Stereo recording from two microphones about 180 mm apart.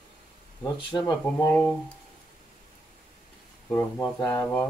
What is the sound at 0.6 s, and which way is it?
Speech, 15° left (ahead or behind).